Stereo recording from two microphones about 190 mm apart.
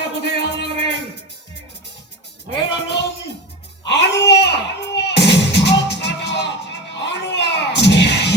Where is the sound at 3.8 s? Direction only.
65° left (ahead or behind).